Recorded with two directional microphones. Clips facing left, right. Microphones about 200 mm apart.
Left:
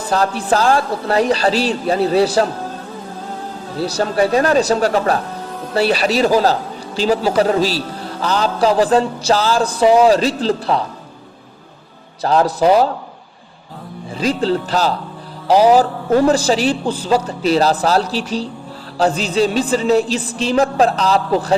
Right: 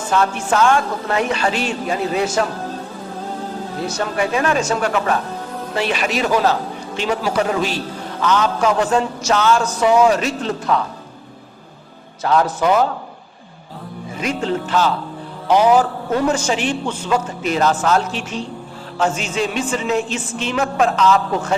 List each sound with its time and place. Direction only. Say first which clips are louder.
0.1 s a man's voice: left 2 dB; 35° left (ahead or behind)
3.8 s a man's voice: left 5 dB; 35° left (ahead or behind)
12.2 s a man's voice: left 3 dB; 35° left (ahead or behind)
14.2 s a man's voice: left 4 dB; 35° left (ahead or behind)